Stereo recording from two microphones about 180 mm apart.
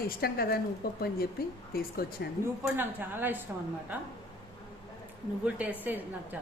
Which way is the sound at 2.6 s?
10° right (ahead or behind).